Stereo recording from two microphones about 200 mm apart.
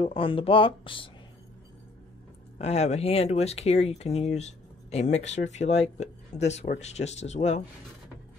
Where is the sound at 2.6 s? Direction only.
30° left (ahead or behind).